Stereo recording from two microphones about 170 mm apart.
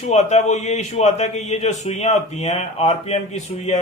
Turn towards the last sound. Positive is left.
turn(degrees=40)  # may be behind; listen again after turning